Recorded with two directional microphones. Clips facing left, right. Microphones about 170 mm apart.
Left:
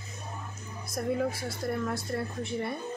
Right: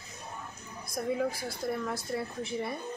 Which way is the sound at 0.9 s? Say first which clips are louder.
Left 1 dB; centre (ahead or behind).